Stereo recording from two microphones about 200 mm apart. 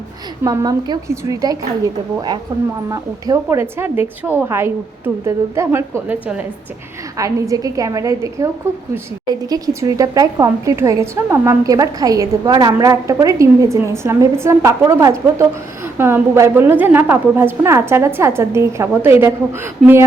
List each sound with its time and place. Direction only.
0.4 s a woman's voice: 15° right (ahead or behind)